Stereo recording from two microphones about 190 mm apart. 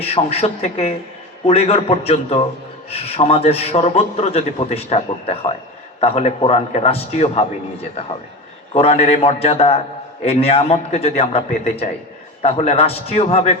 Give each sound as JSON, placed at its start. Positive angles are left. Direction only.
{"t": 0.0, "sound": "a man's voice", "side_deg": 30}
{"t": 8.7, "sound": "a man's voice", "side_deg": 30}